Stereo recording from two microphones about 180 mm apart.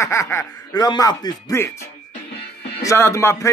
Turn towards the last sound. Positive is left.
turn(degrees=15)  # may be behind; listen again after turning